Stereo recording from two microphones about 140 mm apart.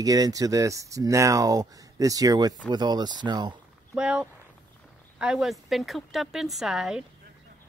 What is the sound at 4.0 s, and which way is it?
Speech, 5° right (ahead or behind).